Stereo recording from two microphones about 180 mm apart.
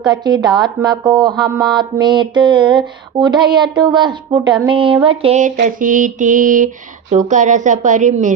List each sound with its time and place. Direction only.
0.0 s a sound: 25° right (ahead or behind)
5.0 s speech: 30° right (ahead or behind)
5.6 s a woman's voice: 45° right (ahead or behind)